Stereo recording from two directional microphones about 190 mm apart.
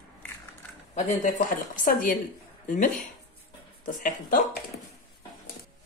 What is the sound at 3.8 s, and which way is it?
Speech, 45° left (ahead or behind).